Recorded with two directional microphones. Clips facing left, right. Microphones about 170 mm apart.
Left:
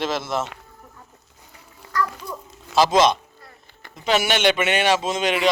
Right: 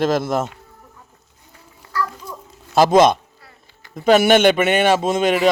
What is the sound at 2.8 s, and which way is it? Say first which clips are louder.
A man's voice: right 4 dB; 55° right (ahead or behind).